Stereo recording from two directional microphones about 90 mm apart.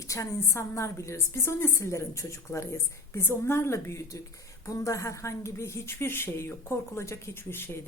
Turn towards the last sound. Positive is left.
turn(degrees=25)  # may be behind; listen again after turning